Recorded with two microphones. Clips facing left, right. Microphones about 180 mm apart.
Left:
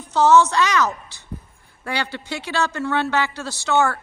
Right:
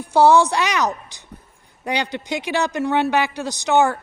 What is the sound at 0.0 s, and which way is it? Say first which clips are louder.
A man's voice: right 1 dB; 10° right (ahead or behind).